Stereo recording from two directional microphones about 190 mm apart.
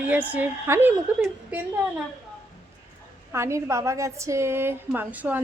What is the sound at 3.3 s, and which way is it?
A woman's voice, 15° right (ahead or behind).